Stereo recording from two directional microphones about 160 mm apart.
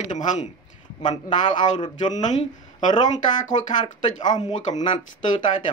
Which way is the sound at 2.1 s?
50° left (ahead or behind).